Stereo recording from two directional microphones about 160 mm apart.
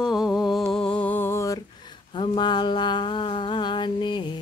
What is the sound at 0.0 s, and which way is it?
Humming, 5° right (ahead or behind).